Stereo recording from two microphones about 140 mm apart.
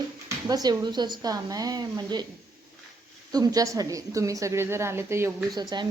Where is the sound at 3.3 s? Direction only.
25° right (ahead or behind).